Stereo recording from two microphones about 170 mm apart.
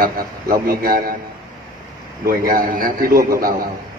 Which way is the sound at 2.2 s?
55° right (ahead or behind).